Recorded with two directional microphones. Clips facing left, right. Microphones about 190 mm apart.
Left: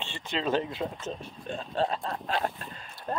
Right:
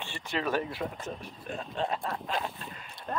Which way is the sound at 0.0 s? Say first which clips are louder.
Left 1 dB; 20° left (ahead or behind).